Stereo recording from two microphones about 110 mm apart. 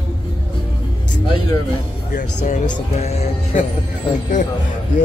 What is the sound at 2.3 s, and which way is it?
Speech, 85° left.